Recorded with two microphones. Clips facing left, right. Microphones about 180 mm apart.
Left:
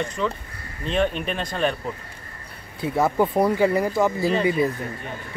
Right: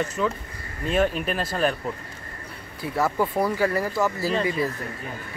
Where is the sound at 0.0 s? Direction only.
5° right (ahead or behind).